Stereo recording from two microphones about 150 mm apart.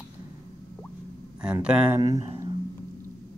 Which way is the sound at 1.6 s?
10° right (ahead or behind).